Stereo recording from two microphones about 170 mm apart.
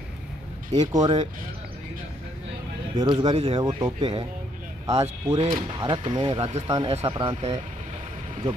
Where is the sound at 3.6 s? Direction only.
20° right (ahead or behind).